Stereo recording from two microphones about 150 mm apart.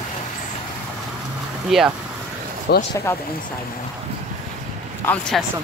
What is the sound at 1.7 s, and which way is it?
Speech, centre (ahead or behind).